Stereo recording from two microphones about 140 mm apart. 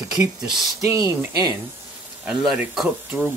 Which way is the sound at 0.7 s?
20° right (ahead or behind).